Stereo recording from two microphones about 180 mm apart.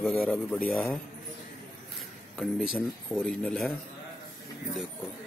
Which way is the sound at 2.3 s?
Centre (ahead or behind).